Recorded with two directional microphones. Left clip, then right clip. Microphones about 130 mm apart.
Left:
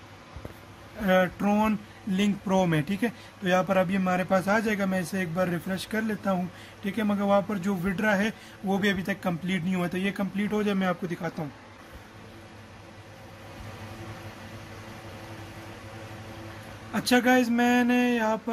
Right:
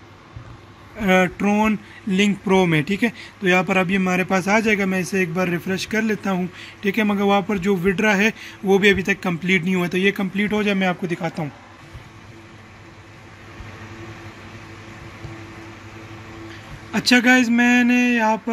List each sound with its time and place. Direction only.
1.0 s speech: 20° right (ahead or behind)
1.4 s speech: 5° right (ahead or behind)
2.0 s a man's voice: 15° right (ahead or behind)
16.9 s speech: 15° right (ahead or behind)